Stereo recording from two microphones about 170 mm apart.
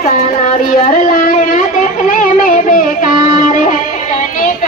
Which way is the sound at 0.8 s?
55° left (ahead or behind).